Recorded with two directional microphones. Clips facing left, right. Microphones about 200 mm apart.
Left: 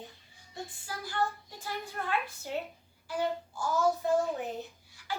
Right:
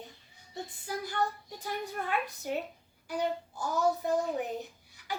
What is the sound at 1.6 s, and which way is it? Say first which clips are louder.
Speech: right 2 dB; 20° right (ahead or behind).